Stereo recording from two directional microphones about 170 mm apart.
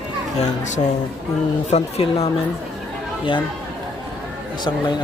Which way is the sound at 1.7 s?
40° left (ahead or behind).